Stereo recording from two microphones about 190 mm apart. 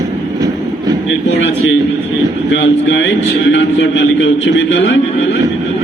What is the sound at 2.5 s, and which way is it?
A man's voice, 70° left (ahead or behind).